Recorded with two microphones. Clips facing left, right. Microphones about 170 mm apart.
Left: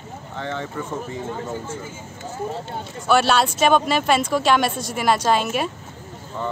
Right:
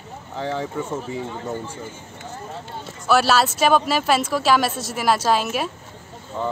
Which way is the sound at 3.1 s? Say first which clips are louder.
Even; 5° right (ahead or behind).